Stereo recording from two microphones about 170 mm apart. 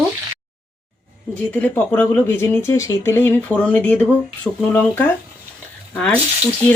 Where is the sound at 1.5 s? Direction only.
10° left (ahead or behind).